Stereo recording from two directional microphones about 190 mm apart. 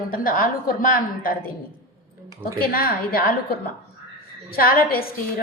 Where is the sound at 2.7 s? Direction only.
50° left (ahead or behind).